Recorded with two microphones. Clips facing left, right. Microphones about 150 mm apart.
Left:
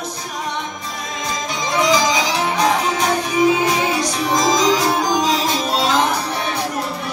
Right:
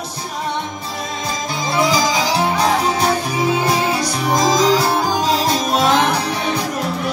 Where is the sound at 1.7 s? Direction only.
35° right (ahead or behind).